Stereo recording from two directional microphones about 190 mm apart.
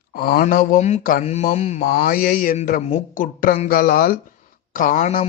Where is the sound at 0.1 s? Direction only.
50° left (ahead or behind).